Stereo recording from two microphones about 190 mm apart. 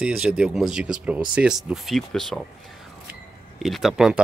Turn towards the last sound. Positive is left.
turn(degrees=0)  # may be behind; listen again after turning